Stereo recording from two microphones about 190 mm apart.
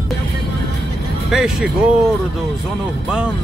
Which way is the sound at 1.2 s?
5° right (ahead or behind).